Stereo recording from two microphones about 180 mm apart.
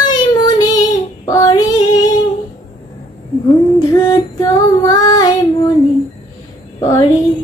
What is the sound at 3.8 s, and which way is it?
Female singing, 20° left (ahead or behind).